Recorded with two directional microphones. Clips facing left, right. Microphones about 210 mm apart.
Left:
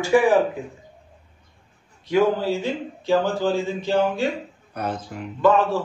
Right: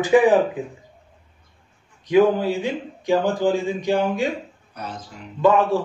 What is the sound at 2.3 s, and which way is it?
Speech, 15° right (ahead or behind).